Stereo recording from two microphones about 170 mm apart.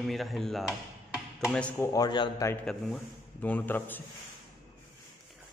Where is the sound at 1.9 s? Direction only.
25° left (ahead or behind).